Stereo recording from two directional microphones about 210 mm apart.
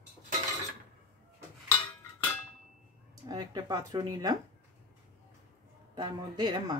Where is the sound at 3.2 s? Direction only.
15° right (ahead or behind).